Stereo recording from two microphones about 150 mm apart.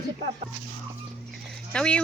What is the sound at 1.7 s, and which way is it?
Speech, 5° left (ahead or behind).